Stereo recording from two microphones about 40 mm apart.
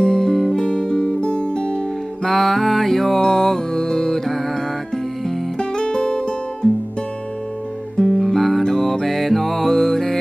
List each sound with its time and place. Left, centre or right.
0.0 s music: centre
1.2 s music: left
2.2 s music: centre
5.6 s music: left
8.1 s music: centre